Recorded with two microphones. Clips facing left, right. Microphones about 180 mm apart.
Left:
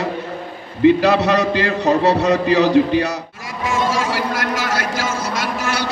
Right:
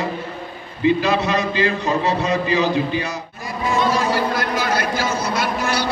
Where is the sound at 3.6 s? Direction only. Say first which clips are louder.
Right 1 dB; 90° left.